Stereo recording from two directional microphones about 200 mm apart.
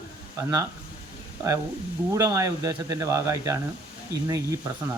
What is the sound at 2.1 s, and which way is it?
Speech, 15° right (ahead or behind).